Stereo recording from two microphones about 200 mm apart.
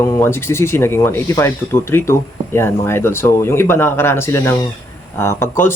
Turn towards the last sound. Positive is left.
turn(degrees=10)  # may be behind; listen again after turning